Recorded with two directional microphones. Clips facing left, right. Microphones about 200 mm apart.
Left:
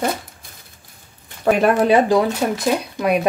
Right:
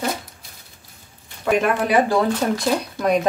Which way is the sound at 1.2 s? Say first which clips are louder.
Left 3 dB; 40° left (ahead or behind).